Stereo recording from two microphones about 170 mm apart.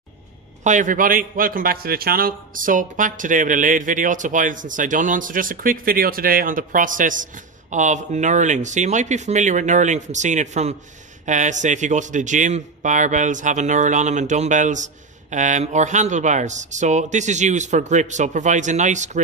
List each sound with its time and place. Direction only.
0.7 s a man's voice: 50° right (ahead or behind)